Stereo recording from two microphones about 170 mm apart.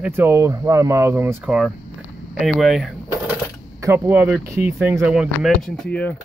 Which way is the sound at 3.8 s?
15° right (ahead or behind).